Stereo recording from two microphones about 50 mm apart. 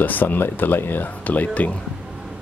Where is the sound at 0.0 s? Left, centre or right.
Left.